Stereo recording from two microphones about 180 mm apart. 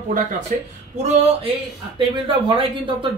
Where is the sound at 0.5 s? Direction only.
50° right (ahead or behind).